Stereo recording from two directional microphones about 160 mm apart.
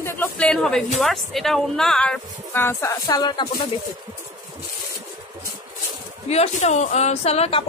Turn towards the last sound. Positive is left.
turn(degrees=40)  # may be behind; listen again after turning